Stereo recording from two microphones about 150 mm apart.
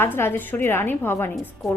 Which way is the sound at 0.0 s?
15° left (ahead or behind).